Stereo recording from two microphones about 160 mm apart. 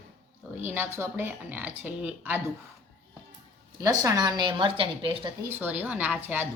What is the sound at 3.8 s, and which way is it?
Speech, 20° right (ahead or behind).